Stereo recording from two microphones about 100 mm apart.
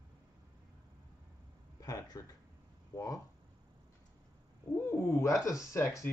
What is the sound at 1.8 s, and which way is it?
Speech, 35° left (ahead or behind).